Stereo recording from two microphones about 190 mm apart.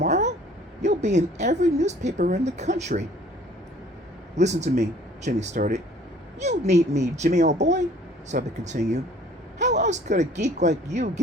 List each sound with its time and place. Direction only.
0.0 s a sound: 35° right (ahead or behind)
0.8 s a woman's voice: 35° right (ahead or behind)
4.4 s a woman's voice: 35° right (ahead or behind)